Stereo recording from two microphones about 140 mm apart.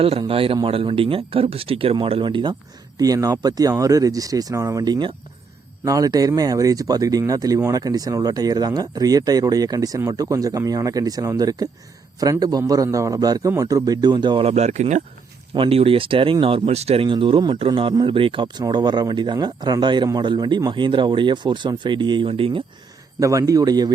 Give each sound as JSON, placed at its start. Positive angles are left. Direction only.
{"t": 0.0, "sound": "speech", "side_deg": -40}
{"t": 14.4, "sound": "speech", "side_deg": -50}
{"t": 15.5, "sound": "speech", "side_deg": -40}
{"t": 23.2, "sound": "speech", "side_deg": -25}